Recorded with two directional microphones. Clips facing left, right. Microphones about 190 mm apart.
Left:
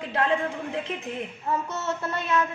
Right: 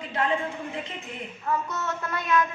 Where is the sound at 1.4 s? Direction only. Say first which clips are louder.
Even; 30° left (ahead or behind).